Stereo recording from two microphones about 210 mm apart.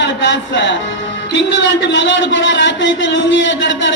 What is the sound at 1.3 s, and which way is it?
A man's voice, 60° left (ahead or behind).